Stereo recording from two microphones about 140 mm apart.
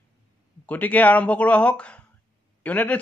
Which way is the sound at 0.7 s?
10° left (ahead or behind).